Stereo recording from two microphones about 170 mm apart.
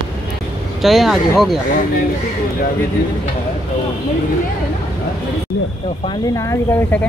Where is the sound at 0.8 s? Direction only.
Centre (ahead or behind).